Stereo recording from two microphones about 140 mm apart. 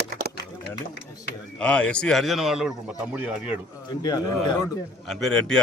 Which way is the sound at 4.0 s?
30° left (ahead or behind).